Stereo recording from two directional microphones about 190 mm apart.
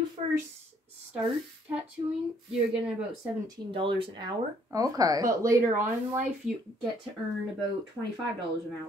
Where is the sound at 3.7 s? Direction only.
30° right (ahead or behind).